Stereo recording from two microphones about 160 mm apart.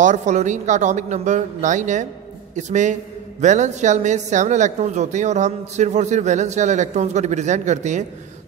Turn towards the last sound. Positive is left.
turn(degrees=-50)  # may be behind; listen again after turning